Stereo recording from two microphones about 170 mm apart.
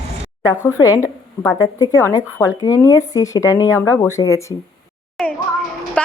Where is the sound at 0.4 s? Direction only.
20° left (ahead or behind).